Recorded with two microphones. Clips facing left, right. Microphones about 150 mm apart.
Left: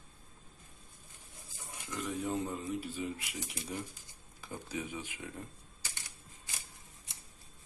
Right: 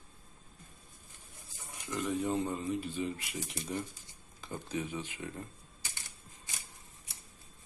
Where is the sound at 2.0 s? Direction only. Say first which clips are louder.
Right 3 dB; 5° right (ahead or behind).